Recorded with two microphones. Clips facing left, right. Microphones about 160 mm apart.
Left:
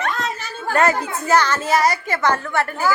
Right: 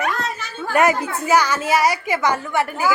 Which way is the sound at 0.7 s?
10° right (ahead or behind).